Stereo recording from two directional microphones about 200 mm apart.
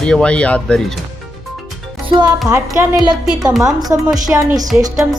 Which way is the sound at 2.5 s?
15° right (ahead or behind).